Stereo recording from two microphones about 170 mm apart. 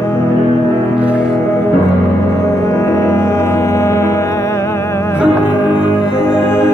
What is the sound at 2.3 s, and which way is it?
Music, 15° left (ahead or behind).